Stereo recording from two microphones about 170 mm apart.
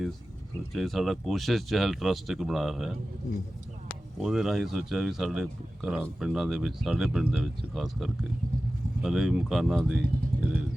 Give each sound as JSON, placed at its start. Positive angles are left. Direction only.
{"t": 0.7, "sound": "speech", "side_deg": 0}
{"t": 4.2, "sound": "speech", "side_deg": -5}
{"t": 10.3, "sound": "vehicle", "side_deg": -35}